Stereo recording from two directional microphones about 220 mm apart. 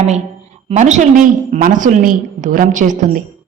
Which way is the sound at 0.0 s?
30° right (ahead or behind).